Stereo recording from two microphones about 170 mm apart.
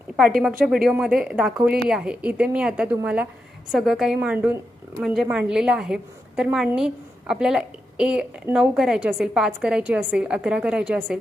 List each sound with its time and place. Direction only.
0.2 s a woman's voice: 5° right (ahead or behind)